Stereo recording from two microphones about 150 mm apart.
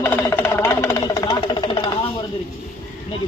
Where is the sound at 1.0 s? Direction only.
30° left (ahead or behind).